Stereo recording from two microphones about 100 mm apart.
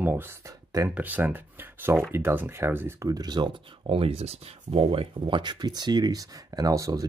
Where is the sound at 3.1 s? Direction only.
40° right (ahead or behind).